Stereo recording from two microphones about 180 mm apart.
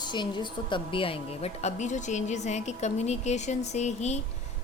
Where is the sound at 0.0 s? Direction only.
25° left (ahead or behind).